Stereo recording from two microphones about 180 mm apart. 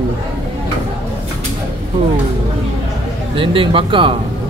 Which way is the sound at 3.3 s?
30° right (ahead or behind).